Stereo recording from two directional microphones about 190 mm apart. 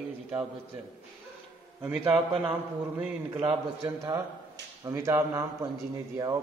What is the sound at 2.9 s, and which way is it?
A man's voice, 10° right (ahead or behind).